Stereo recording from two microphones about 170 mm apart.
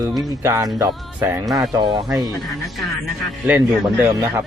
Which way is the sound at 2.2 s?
Centre (ahead or behind).